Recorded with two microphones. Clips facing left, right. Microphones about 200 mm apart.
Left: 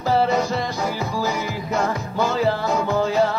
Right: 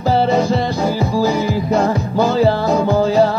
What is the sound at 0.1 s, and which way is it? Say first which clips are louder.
Music: right 4 dB; 30° right (ahead or behind).